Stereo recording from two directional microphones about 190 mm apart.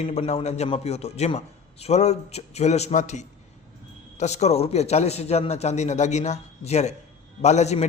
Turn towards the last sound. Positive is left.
turn(degrees=35)  # may be behind; listen again after turning